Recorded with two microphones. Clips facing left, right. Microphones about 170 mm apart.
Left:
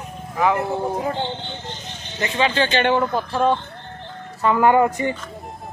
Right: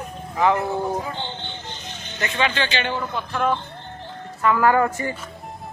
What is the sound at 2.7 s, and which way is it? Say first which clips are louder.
Speech: left 7 dB; 55° left (ahead or behind).